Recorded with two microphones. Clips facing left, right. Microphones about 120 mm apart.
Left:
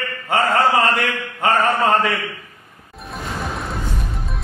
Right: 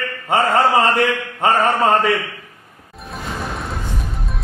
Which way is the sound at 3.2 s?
Centre (ahead or behind).